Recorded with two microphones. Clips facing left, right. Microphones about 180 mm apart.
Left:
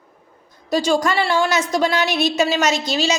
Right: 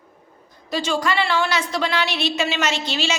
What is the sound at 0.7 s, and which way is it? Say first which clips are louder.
A woman's voice: left 5 dB; 40° left (ahead or behind).